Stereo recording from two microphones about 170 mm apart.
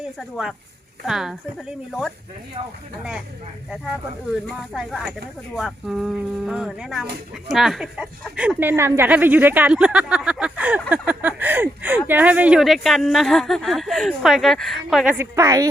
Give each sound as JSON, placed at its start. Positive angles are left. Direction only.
{"t": 0.2, "sound": "speech", "side_deg": 0}
{"t": 2.6, "sound": "speech", "side_deg": -30}
{"t": 4.7, "sound": "speech", "side_deg": -5}
{"t": 15.2, "sound": "a woman's voice", "side_deg": -20}